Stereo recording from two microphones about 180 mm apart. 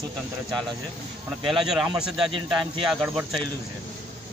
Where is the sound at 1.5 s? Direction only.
Centre (ahead or behind).